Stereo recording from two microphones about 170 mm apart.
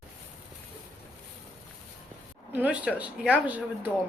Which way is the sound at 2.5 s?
10° right (ahead or behind).